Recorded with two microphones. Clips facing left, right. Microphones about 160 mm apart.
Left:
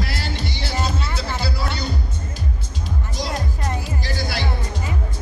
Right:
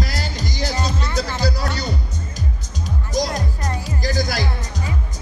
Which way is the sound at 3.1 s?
40° right (ahead or behind).